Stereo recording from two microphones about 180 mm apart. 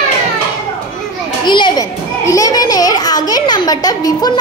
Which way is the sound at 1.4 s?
25° left (ahead or behind).